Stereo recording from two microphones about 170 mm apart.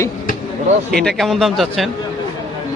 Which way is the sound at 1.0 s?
Centre (ahead or behind).